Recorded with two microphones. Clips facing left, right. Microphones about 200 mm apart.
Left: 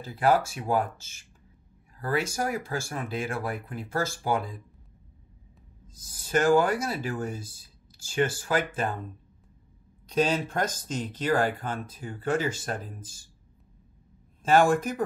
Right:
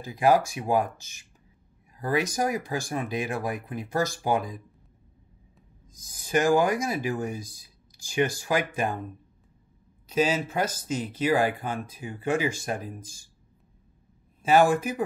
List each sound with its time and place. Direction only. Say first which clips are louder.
0.0 s speech: right 2 dB; 15° right (ahead or behind)
6.0 s speech: even; 10° right (ahead or behind)
10.0 s speech: right 1 dB; 5° right (ahead or behind)
14.4 s speech: right 1 dB; 10° right (ahead or behind)